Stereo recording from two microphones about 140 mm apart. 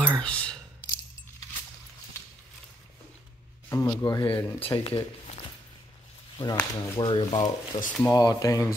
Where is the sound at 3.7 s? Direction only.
20° left (ahead or behind).